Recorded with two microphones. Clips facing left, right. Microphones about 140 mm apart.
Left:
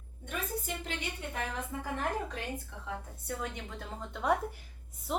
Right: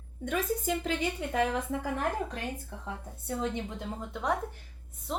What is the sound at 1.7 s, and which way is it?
Speech, 90° right.